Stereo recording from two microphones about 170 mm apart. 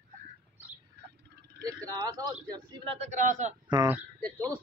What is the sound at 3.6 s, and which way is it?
Speech, 25° right (ahead or behind).